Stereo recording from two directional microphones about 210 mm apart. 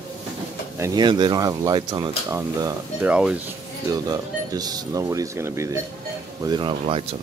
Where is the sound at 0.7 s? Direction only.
15° right (ahead or behind).